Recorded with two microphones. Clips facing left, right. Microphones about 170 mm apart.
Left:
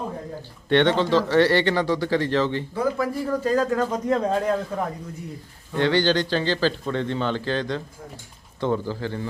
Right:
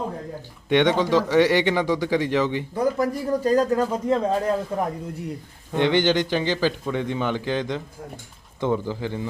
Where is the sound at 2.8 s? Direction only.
40° right (ahead or behind).